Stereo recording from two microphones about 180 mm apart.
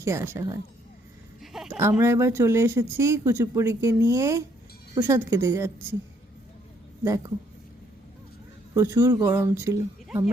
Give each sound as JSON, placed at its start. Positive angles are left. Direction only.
{"t": 0.0, "sound": "speech", "side_deg": -15}
{"t": 1.4, "sound": "a sound", "side_deg": -5}
{"t": 1.9, "sound": "speech", "side_deg": -15}
{"t": 7.0, "sound": "speech", "side_deg": -20}
{"t": 8.7, "sound": "speech", "side_deg": -20}